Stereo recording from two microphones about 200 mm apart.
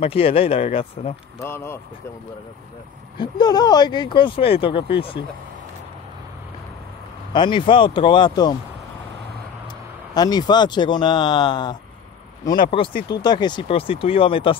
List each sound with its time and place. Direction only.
0.0 s speech: 30° left (ahead or behind)
1.4 s speech: 10° left (ahead or behind)
3.2 s speech: 20° left (ahead or behind)
4.7 s speech: 55° left (ahead or behind)
7.3 s speech: 25° left (ahead or behind)
10.1 s speech: 20° left (ahead or behind)